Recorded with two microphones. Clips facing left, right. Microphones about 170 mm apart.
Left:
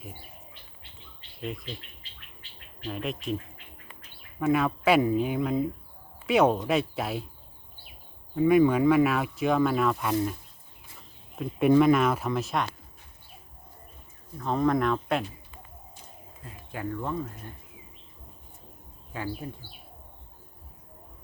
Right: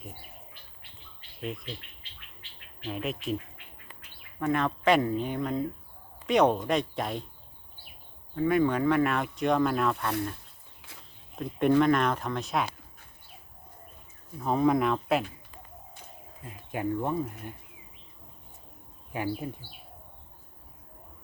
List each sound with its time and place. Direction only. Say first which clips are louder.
1.4 s speech: left 1 dB; centre (ahead or behind)
2.8 s speech: even; centre (ahead or behind)
4.4 s speech: left 3 dB; 5° left (ahead or behind)
8.4 s speech: left 4 dB; 10° left (ahead or behind)
11.4 s speech: left 3 dB; centre (ahead or behind)
14.3 s speech: right 1 dB; 5° right (ahead or behind)
16.4 s speech: right 3 dB; 20° right (ahead or behind)
19.1 s speech: right 3 dB; 20° right (ahead or behind)